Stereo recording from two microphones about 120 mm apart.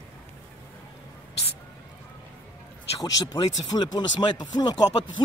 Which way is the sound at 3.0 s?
30° left (ahead or behind).